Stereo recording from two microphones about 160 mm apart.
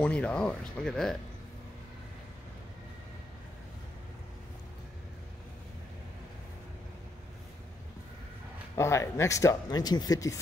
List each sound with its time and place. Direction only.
0.0 s speech: 5° left (ahead or behind)
8.7 s speech: 15° left (ahead or behind)